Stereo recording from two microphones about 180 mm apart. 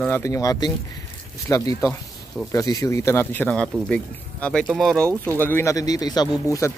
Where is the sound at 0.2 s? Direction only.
20° left (ahead or behind).